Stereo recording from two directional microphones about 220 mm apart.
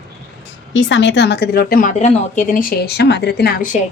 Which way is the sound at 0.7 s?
55° left (ahead or behind).